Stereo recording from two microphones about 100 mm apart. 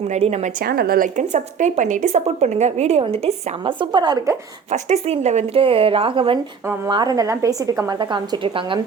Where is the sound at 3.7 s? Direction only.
50° right (ahead or behind).